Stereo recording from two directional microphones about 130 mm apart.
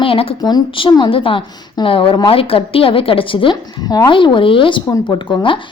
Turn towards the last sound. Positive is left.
turn(degrees=40)  # may be behind; listen again after turning